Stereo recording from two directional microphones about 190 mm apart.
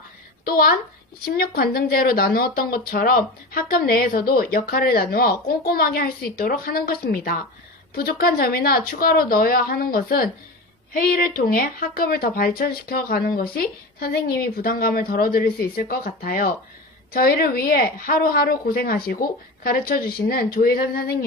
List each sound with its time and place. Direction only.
0.4 s a child's voice: 50° left (ahead or behind)